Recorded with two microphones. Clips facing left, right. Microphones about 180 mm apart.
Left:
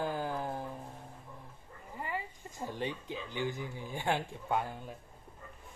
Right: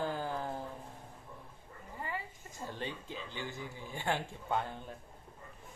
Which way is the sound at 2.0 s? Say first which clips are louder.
Left 3 dB; 15° left (ahead or behind).